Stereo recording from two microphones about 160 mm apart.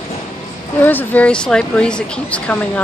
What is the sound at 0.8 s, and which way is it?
Speech, 10° left (ahead or behind).